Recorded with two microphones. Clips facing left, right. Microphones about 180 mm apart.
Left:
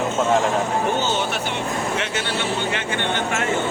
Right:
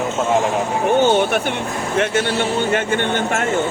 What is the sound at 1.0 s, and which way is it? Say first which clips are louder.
A man's voice: right 8 dB; 55° right (ahead or behind).